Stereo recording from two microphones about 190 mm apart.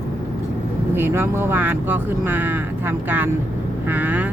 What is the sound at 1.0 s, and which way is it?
Speech, 15° right (ahead or behind).